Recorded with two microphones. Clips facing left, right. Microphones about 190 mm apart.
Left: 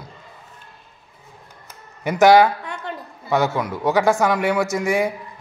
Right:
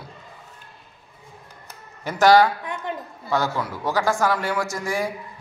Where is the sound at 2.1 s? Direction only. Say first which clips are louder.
Left 3 dB; 20° left (ahead or behind).